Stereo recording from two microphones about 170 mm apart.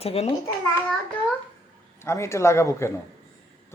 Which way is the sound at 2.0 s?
15° left (ahead or behind).